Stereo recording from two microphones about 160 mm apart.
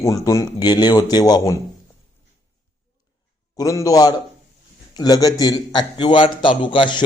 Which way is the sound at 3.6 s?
20° left (ahead or behind).